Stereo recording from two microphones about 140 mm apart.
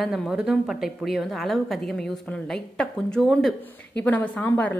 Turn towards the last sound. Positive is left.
turn(degrees=10)  # may be behind; listen again after turning